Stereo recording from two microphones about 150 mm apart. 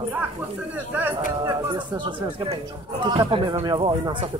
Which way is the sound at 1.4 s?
30° right (ahead or behind).